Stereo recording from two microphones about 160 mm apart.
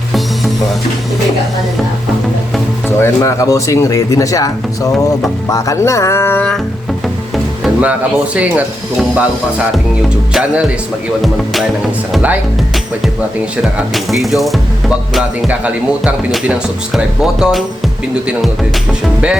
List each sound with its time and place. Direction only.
3.0 s speech: 20° left (ahead or behind)
7.6 s music: 10° right (ahead or behind)
8.4 s speech: 10° right (ahead or behind)
10.3 s music: 5° right (ahead or behind)
12.1 s music: 5° right (ahead or behind)
18.1 s speech: 5° right (ahead or behind)
19.0 s music: 5° right (ahead or behind)